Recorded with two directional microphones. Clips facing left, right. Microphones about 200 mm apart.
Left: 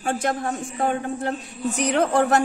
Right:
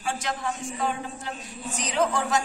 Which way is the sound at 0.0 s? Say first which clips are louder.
Left 6 dB; 55° left (ahead or behind).